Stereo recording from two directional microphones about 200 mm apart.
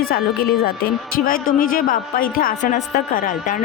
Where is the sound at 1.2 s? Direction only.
45° left (ahead or behind).